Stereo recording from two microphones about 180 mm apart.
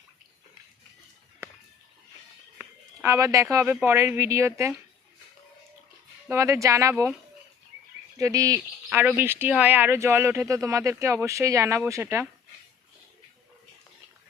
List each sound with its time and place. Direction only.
1.4 s a sound: 15° right (ahead or behind)
2.6 s speech: 15° right (ahead or behind)
6.3 s speech: 15° right (ahead or behind)
8.2 s speech: 20° right (ahead or behind)